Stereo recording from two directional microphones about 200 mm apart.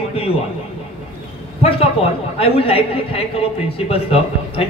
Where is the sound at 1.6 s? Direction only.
30° left (ahead or behind).